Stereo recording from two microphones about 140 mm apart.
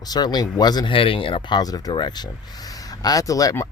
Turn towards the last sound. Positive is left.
turn(degrees=25)  # may be behind; listen again after turning